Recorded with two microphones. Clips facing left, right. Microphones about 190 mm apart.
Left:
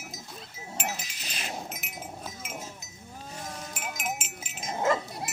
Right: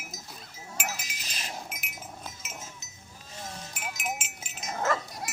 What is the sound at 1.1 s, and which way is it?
Livestock, 40° right (ahead or behind).